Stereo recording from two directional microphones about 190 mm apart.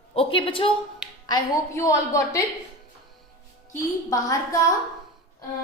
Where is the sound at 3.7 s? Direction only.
15° left (ahead or behind).